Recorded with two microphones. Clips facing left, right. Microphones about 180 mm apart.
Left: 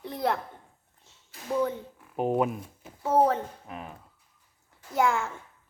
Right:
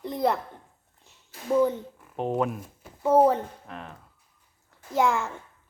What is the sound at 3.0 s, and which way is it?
Speech, 10° right (ahead or behind).